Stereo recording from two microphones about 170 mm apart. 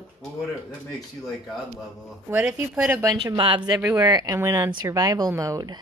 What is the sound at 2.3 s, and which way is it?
Speech, 5° right (ahead or behind).